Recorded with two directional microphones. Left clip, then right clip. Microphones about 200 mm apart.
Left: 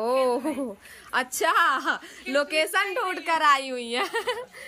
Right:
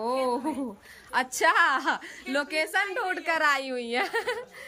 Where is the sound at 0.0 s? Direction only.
Centre (ahead or behind).